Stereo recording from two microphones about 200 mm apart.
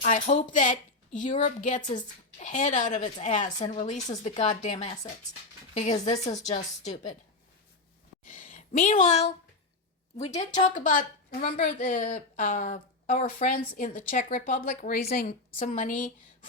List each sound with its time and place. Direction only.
0.0 s a woman's voice: 35° left (ahead or behind)
8.2 s a sound: 40° left (ahead or behind)
10.2 s a woman's voice: 35° left (ahead or behind)